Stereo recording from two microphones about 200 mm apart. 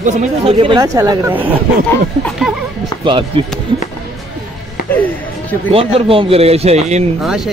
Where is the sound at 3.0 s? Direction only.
25° right (ahead or behind).